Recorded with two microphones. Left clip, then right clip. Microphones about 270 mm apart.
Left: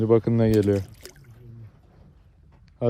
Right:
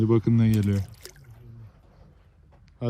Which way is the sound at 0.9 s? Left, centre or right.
Centre.